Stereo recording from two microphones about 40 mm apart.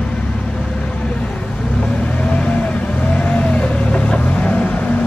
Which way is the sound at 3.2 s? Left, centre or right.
Left.